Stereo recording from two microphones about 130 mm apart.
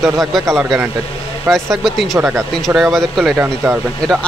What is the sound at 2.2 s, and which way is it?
Speech, 20° right (ahead or behind).